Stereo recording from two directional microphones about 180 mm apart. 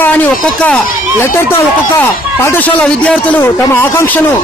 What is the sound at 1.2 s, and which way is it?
A man's voice, 15° left (ahead or behind).